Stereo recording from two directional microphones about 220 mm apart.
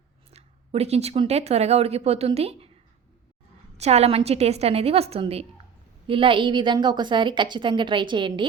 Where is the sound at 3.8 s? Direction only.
30° right (ahead or behind).